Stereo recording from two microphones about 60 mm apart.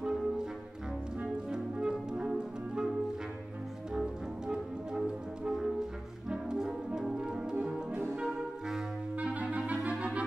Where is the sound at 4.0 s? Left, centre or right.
Centre.